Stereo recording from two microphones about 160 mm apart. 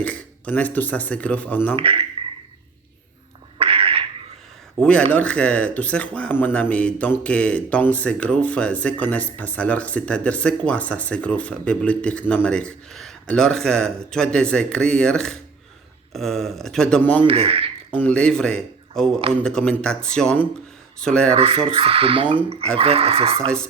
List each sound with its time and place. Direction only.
0.0 s speech: 10° left (ahead or behind)
1.7 s speech: 35° right (ahead or behind)
3.6 s a sound: 35° right (ahead or behind)
4.8 s a man's voice: 5° left (ahead or behind)
17.2 s speech: 35° right (ahead or behind)
17.9 s a man's voice: 10° left (ahead or behind)
21.3 s speech: 35° right (ahead or behind)